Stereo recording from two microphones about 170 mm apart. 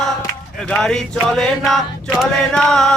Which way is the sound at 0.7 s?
5° left (ahead or behind).